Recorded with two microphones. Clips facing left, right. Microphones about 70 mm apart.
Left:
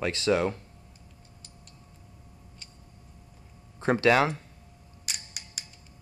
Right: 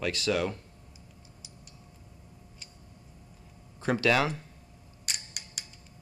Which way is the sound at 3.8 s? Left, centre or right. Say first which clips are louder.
Left 4 dB; left.